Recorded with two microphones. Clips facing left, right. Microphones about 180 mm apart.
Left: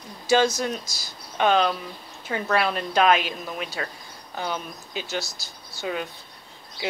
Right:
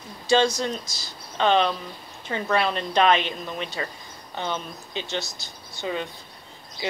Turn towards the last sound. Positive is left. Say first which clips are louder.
# even
turn(degrees=5)  # may be behind; listen again after turning